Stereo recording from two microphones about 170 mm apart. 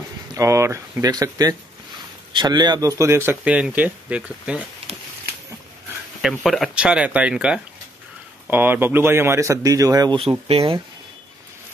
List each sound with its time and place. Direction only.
0.3 s speech: 15° right (ahead or behind)
6.2 s speech: centre (ahead or behind); by 10.2 s 20° right (ahead or behind)
10.5 s speech: 35° right (ahead or behind)